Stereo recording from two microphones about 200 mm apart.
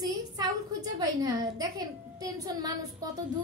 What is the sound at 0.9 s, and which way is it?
A woman's voice, 20° right (ahead or behind).